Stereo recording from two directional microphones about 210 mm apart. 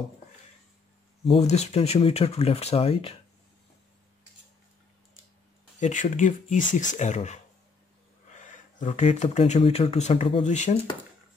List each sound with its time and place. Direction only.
1.2 s speech: 30° left (ahead or behind)
5.8 s speech: 35° left (ahead or behind)
8.3 s a sound: 35° left (ahead or behind)
8.8 s speech: 35° left (ahead or behind)